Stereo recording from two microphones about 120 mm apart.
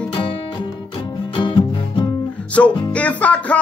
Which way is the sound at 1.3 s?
45° left (ahead or behind).